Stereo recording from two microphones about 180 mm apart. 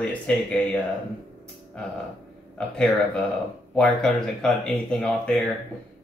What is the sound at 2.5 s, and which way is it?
Speech, 5° left (ahead or behind).